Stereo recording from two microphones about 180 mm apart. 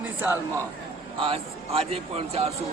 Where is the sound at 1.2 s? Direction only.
30° right (ahead or behind).